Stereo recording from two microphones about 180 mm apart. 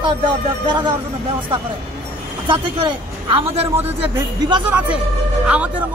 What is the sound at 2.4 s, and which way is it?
Speech, 25° right (ahead or behind).